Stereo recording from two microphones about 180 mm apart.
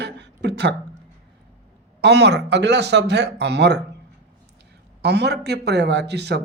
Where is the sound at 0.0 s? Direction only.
70° right (ahead or behind).